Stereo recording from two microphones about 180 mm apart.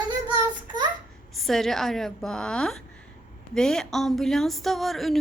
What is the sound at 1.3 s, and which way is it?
A woman's voice, centre (ahead or behind).